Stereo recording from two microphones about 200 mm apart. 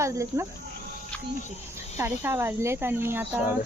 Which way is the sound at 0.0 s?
15° right (ahead or behind).